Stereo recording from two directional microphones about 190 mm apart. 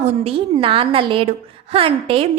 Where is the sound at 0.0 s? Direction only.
30° right (ahead or behind).